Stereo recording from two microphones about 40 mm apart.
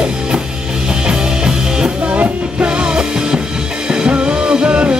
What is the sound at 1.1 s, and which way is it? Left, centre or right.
Music, right.